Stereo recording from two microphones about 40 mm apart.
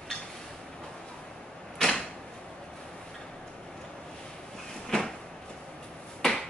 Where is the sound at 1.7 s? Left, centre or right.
Centre.